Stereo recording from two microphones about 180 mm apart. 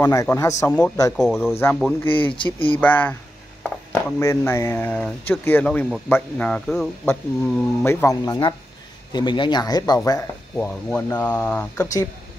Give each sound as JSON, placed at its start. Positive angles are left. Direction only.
{"t": 0.0, "sound": "speech", "side_deg": 15}
{"t": 1.1, "sound": "speech", "side_deg": 0}
{"t": 1.5, "sound": "speech", "side_deg": 15}
{"t": 2.3, "sound": "speech", "side_deg": 30}
{"t": 2.7, "sound": "speech", "side_deg": 10}
{"t": 7.8, "sound": "speech", "side_deg": 15}